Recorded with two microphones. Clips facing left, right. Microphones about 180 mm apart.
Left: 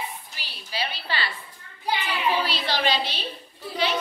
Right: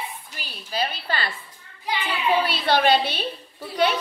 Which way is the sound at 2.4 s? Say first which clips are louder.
Right 5 dB; 55° right (ahead or behind).